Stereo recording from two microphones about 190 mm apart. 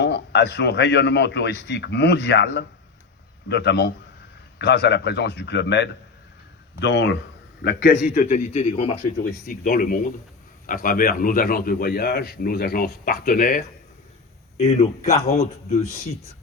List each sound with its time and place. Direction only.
0.0 s a man's voice: 65° left (ahead or behind); by 9.0 s 35° left (ahead or behind)
9.2 s a man's voice: 50° left (ahead or behind)
14.6 s a man's voice: 35° left (ahead or behind)